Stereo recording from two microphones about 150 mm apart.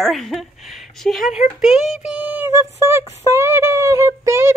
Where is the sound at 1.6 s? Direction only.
Centre (ahead or behind).